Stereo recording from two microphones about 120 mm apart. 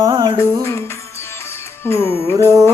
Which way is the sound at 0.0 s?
35° right (ahead or behind).